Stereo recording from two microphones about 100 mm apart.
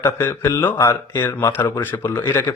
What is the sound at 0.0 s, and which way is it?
Speech, 20° left (ahead or behind).